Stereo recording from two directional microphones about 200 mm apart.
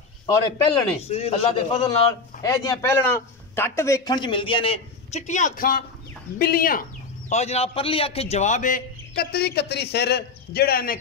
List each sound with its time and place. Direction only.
0.7 s a man's voice: 30° left (ahead or behind)
2.4 s a man's voice: 15° left (ahead or behind); by 11.0 s 50° left (ahead or behind)